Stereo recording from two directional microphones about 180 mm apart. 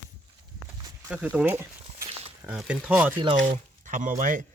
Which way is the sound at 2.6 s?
5° right (ahead or behind).